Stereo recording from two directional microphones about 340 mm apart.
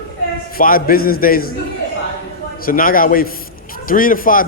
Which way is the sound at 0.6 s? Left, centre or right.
Left.